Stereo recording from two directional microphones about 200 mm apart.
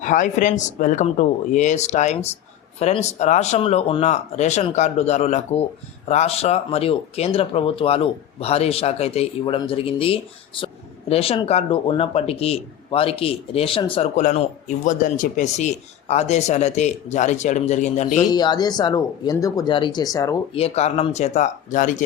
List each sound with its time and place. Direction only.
0.0 s speech: 40° left (ahead or behind)
18.3 s speech: 20° left (ahead or behind)
20.6 s speech: 30° left (ahead or behind)